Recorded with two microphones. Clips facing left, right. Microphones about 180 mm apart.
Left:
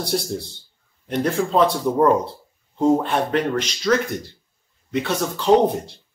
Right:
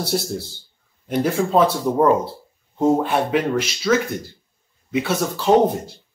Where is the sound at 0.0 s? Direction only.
5° right (ahead or behind).